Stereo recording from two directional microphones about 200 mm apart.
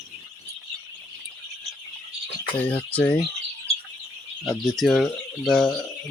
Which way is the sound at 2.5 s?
5° left (ahead or behind).